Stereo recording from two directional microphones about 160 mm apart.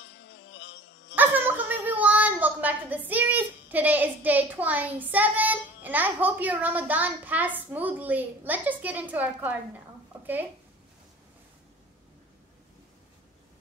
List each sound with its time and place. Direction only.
0.0 s music: 90° left
1.1 s a sound: 10° right (ahead or behind)
1.9 s speech: 10° right (ahead or behind)